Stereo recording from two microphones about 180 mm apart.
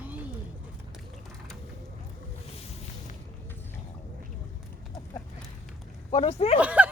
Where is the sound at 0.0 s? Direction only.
10° right (ahead or behind).